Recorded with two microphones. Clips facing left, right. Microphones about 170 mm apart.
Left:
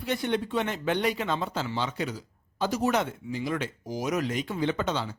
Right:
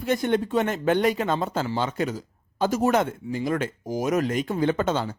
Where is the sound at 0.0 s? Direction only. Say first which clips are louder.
Right 5 dB; 45° right (ahead or behind).